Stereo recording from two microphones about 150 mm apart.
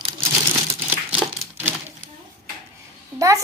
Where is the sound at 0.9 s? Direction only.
10° right (ahead or behind).